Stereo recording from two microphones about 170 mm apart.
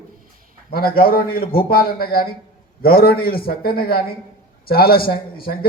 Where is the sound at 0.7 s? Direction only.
60° left (ahead or behind).